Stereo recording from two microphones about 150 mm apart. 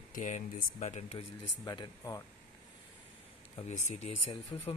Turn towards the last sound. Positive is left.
turn(degrees=30)  # may be behind; listen again after turning